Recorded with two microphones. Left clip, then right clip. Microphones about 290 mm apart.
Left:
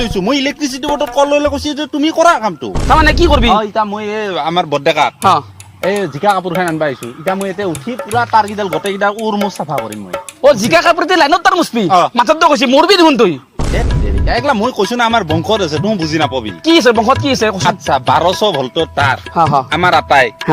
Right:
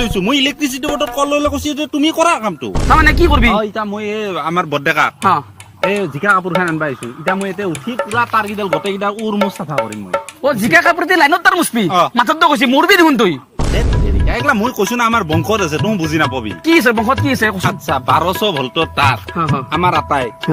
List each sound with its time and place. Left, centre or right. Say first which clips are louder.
0.0 s speech: even; centre
2.7 s speech: left 1 dB; centre
3.6 s speech: left 4 dB; centre
10.4 s speech: left 3 dB; centre
14.3 s speech: left 2 dB; centre
19.7 s speech: left 2 dB; left